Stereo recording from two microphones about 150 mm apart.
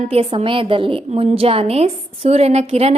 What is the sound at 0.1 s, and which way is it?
A woman's voice, 40° right (ahead or behind).